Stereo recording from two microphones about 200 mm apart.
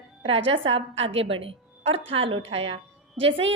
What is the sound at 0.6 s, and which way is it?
Speech, 70° right (ahead or behind).